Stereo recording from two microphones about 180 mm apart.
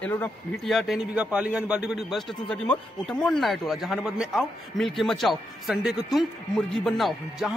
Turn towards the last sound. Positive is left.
turn(degrees=0)  # may be behind; listen again after turning